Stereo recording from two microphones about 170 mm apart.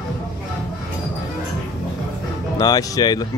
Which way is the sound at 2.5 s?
20° left (ahead or behind).